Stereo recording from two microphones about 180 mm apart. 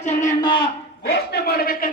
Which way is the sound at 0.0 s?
40° left (ahead or behind).